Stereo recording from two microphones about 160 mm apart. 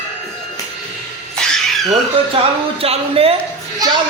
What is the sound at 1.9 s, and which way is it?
Speech, 35° right (ahead or behind).